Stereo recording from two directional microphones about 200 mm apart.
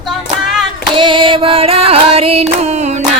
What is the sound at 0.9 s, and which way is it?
Singing, 25° right (ahead or behind).